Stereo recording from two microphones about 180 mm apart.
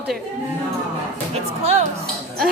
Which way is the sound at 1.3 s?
40° right (ahead or behind).